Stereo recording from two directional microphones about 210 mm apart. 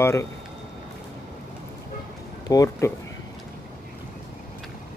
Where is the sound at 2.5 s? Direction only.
15° left (ahead or behind).